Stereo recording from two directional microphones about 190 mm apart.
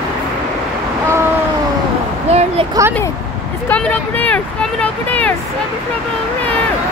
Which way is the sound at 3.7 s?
10° left (ahead or behind).